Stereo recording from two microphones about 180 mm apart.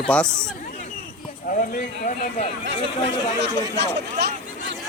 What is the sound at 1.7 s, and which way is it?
Speech, 55° left (ahead or behind).